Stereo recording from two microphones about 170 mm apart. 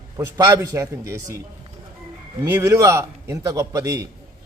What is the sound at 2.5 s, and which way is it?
A man's voice, 20° right (ahead or behind).